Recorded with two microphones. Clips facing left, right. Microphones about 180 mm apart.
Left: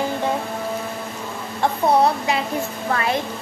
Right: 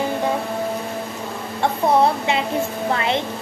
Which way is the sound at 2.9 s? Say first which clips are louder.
Even; 25° right (ahead or behind).